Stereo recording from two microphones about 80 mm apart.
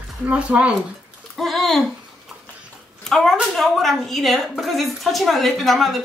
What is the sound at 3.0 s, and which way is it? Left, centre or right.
A woman's voice, centre.